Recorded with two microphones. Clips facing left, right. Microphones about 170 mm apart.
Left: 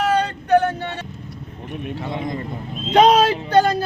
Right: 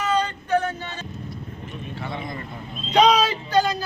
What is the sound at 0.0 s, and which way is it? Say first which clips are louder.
Vehicle: left 4 dB; 70° left (ahead or behind).